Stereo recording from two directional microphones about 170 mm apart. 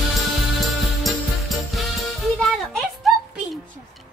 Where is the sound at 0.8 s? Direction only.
Centre (ahead or behind).